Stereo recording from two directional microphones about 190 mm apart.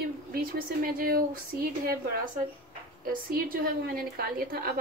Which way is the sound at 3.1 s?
50° right (ahead or behind).